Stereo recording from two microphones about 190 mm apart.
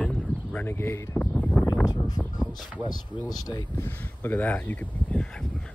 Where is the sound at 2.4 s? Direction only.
5° right (ahead or behind).